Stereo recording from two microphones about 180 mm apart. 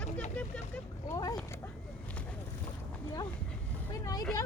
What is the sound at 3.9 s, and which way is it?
Speech, 20° left (ahead or behind).